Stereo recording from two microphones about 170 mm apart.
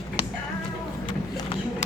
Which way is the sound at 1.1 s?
30° left (ahead or behind).